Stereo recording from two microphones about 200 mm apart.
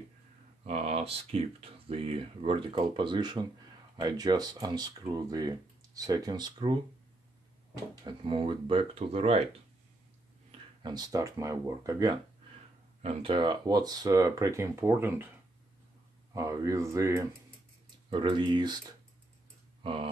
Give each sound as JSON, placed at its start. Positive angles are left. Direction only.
{"t": 0.7, "sound": "speech", "side_deg": -30}
{"t": 8.0, "sound": "speech", "side_deg": -25}
{"t": 10.8, "sound": "speech", "side_deg": -20}
{"t": 13.0, "sound": "speech", "side_deg": -30}
{"t": 16.3, "sound": "speech", "side_deg": -15}